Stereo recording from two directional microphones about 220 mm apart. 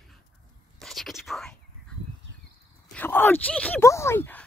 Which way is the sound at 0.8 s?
Centre (ahead or behind).